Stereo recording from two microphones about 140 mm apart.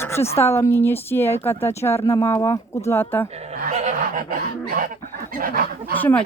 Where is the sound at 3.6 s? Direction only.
65° right (ahead or behind); by 4.9 s 80° right.